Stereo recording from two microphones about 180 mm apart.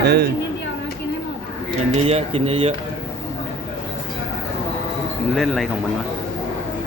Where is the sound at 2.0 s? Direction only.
35° right (ahead or behind).